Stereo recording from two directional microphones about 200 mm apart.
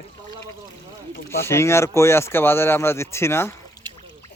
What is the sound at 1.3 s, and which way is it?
Speech, 15° left (ahead or behind).